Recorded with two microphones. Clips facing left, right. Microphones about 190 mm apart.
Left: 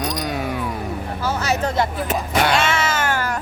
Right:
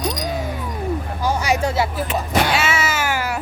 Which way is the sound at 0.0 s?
60° left (ahead or behind).